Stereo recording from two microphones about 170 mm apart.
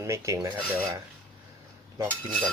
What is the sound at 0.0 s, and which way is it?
Filing, 20° right (ahead or behind).